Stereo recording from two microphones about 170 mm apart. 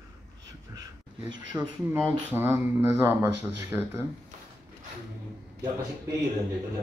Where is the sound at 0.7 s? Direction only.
15° right (ahead or behind).